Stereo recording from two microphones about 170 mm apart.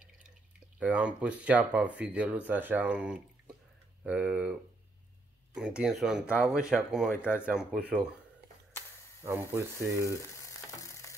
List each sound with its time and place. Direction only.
0.7 s speech: 5° right (ahead or behind)
9.2 s speech: 15° right (ahead or behind)
10.3 s ratchet: 20° left (ahead or behind)